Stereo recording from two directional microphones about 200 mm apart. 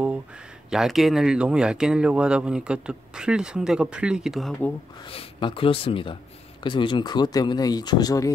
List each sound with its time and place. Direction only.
0.7 s speech: centre (ahead or behind)
5.1 s speech: 25° left (ahead or behind)